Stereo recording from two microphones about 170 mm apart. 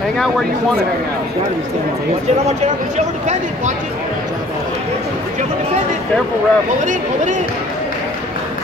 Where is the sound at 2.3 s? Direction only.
40° right (ahead or behind).